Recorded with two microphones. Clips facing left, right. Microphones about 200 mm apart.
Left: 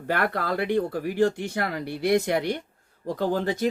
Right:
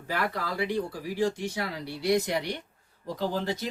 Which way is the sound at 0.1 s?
55° left (ahead or behind).